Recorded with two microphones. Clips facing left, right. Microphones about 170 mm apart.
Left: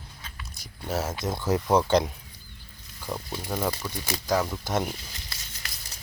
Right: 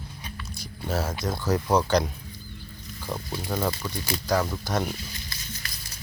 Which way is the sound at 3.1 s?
15° left (ahead or behind).